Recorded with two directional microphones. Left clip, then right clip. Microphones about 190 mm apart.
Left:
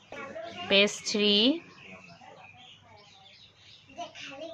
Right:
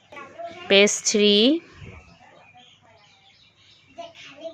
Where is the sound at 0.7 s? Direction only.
35° right (ahead or behind).